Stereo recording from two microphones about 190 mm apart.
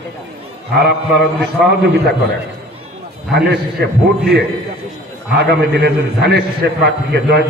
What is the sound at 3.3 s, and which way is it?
Speech, 60° right (ahead or behind).